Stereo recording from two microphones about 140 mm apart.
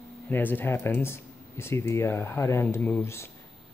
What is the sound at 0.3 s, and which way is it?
Speech, 15° left (ahead or behind).